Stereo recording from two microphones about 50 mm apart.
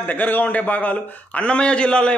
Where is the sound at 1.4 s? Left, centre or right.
Left.